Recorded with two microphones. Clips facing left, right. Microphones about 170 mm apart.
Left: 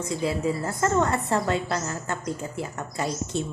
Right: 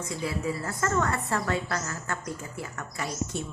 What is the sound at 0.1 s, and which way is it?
A woman's voice, 25° left (ahead or behind).